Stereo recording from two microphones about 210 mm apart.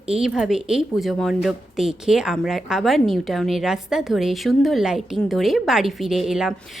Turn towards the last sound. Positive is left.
turn(degrees=0)  # may be behind; listen again after turning